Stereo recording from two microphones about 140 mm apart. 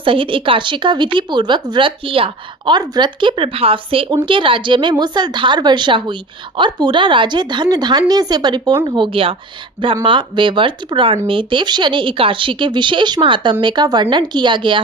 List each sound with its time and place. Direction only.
0.0 s speech: 40° right (ahead or behind)